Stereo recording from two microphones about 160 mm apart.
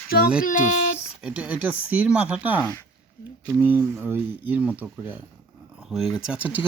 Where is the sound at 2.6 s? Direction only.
20° left (ahead or behind).